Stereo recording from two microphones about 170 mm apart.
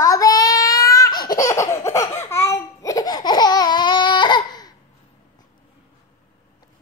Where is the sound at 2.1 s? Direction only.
15° left (ahead or behind).